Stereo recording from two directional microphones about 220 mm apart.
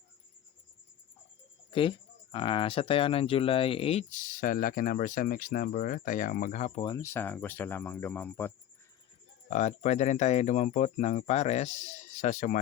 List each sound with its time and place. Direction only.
1.7 s speech: 25° left (ahead or behind)
6.8 s speech: 15° left (ahead or behind)
9.5 s speech: 30° left (ahead or behind)